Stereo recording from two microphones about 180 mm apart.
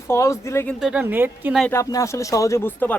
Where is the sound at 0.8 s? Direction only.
10° right (ahead or behind).